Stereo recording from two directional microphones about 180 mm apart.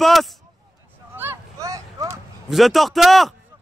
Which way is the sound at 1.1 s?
10° right (ahead or behind).